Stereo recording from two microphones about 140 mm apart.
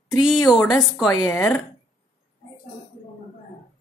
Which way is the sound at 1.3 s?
15° left (ahead or behind).